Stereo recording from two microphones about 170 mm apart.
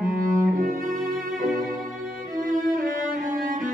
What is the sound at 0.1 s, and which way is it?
Cello, 55° right (ahead or behind).